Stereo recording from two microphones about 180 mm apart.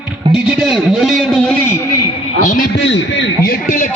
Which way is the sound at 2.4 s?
50° left (ahead or behind).